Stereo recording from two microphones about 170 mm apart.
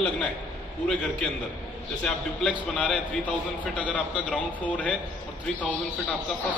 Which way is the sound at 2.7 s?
5° left (ahead or behind).